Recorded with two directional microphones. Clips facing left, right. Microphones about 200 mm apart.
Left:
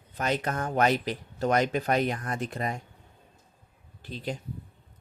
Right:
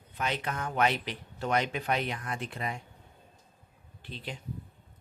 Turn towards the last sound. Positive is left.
turn(degrees=40)  # may be behind; listen again after turning